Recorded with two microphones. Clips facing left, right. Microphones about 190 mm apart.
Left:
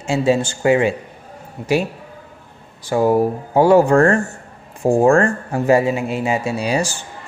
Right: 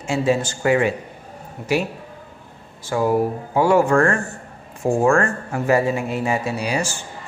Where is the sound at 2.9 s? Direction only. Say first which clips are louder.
Left 4 dB; 25° left (ahead or behind).